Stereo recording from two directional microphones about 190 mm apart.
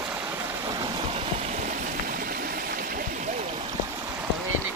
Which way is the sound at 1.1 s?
35° right (ahead or behind).